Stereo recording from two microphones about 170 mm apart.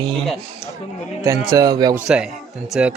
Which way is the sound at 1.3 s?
20° right (ahead or behind).